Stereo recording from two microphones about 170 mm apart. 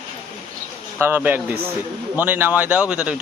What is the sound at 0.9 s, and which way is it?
A man's voice, 10° right (ahead or behind).